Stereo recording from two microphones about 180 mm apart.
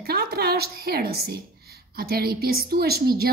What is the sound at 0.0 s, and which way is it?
A woman's voice, 55° right (ahead or behind).